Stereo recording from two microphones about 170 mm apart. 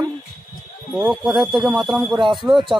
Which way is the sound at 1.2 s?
Centre (ahead or behind).